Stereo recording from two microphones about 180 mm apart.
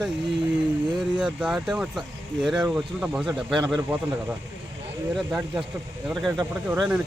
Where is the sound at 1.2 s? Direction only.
5° right (ahead or behind).